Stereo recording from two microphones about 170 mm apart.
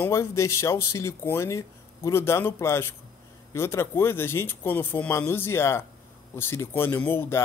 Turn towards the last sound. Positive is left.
turn(degrees=15)  # may be behind; listen again after turning